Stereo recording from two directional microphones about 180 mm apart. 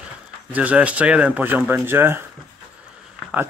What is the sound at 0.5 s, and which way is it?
Speech, 10° right (ahead or behind).